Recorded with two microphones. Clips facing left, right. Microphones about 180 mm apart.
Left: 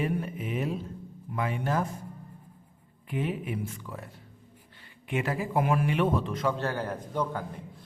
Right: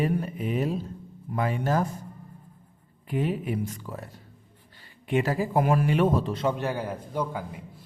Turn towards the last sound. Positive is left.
turn(degrees=-10)  # may be behind; listen again after turning